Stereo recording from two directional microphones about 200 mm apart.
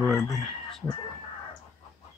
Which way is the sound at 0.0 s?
Centre (ahead or behind).